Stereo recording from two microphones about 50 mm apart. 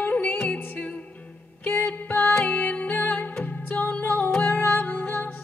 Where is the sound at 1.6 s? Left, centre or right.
Left.